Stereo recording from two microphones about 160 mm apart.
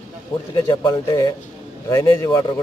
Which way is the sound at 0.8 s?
25° left (ahead or behind).